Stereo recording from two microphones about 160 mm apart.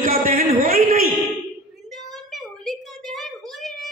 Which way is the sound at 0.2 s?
60° right (ahead or behind).